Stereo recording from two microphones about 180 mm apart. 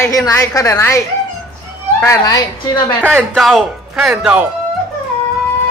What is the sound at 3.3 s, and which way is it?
Speech, centre (ahead or behind).